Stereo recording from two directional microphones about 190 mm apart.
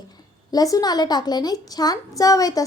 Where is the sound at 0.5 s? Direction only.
20° left (ahead or behind).